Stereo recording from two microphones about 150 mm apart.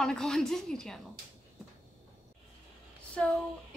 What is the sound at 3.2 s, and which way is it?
Speech, 5° left (ahead or behind).